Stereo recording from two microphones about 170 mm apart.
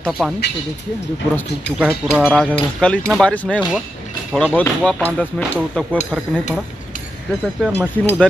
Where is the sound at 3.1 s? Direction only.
5° left (ahead or behind).